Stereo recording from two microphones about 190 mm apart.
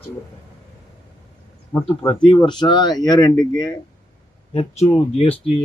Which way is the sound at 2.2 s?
25° left (ahead or behind).